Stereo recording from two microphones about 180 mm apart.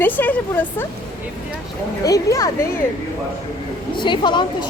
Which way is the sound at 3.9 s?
25° left (ahead or behind).